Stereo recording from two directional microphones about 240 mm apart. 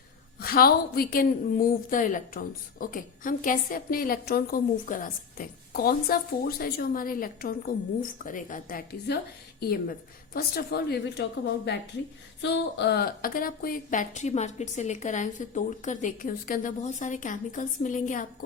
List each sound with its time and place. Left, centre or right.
0.3 s a woman's voice: left